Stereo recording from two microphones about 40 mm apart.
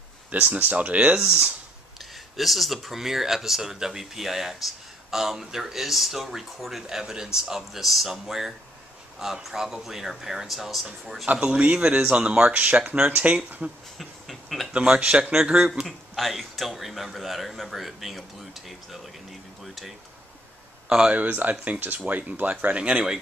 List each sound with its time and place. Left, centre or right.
0.3 s speech: right
1.2 s speech: centre
2.0 s speech: centre
11.3 s speech: right
13.9 s a sound: centre
14.7 s speech: right
16.2 s speech: centre
21.3 s speech: right
22.8 s speech: right